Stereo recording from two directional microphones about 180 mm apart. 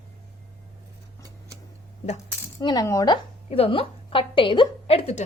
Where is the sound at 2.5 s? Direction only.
20° left (ahead or behind).